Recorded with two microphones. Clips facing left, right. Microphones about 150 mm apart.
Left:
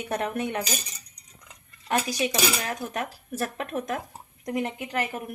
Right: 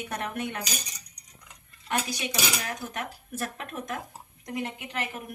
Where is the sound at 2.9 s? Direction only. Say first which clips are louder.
Left 4 dB; 40° left (ahead or behind).